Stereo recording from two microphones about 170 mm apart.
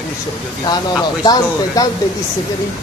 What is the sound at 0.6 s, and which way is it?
Speech, 25° left (ahead or behind).